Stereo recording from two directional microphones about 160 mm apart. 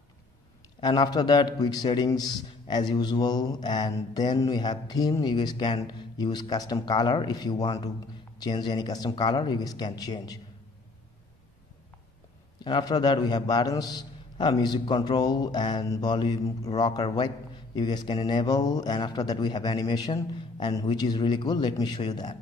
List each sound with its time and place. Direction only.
0.7 s a man's voice: 30° left (ahead or behind)
12.6 s a man's voice: 25° left (ahead or behind)